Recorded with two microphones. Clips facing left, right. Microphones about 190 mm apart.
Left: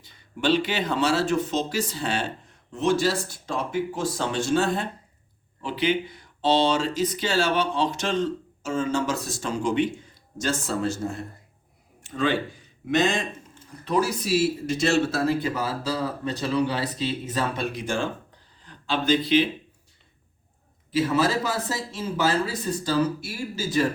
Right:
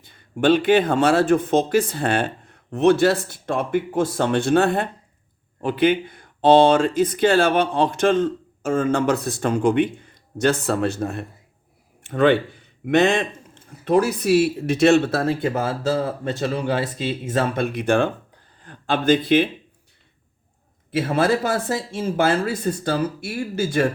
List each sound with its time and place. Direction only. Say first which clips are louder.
0.0 s speech: right 6 dB; 50° right (ahead or behind)
20.9 s speech: right 3 dB; 55° right (ahead or behind)